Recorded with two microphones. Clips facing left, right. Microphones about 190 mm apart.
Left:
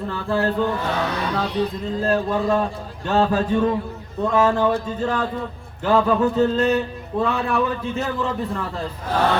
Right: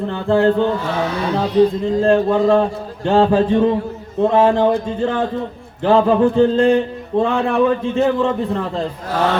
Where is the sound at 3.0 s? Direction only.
25° right (ahead or behind).